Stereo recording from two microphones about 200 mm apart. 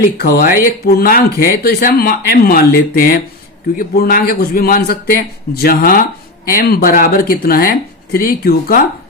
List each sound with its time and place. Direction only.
0.0 s speech: 45° left (ahead or behind)